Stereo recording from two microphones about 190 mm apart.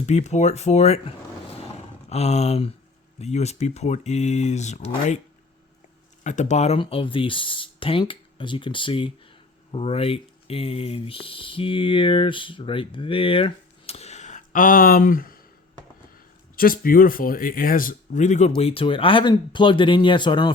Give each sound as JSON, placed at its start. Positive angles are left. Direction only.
{"t": 0.0, "sound": "speech", "side_deg": 35}
{"t": 6.2, "sound": "speech", "side_deg": 40}
{"t": 16.6, "sound": "speech", "side_deg": 50}